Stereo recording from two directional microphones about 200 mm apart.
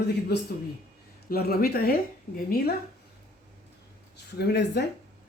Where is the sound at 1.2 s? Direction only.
50° left (ahead or behind).